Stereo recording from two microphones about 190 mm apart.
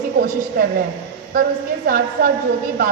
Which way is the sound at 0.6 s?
50° right (ahead or behind).